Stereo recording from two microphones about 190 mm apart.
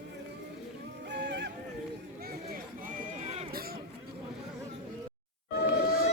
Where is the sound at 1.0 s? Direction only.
65° right (ahead or behind).